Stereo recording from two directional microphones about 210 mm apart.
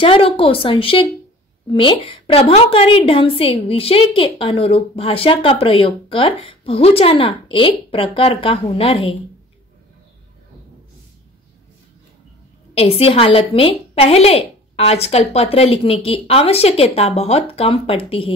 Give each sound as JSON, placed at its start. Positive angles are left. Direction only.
{"t": 0.0, "sound": "a woman's voice", "side_deg": 25}
{"t": 12.7, "sound": "a woman's voice", "side_deg": 30}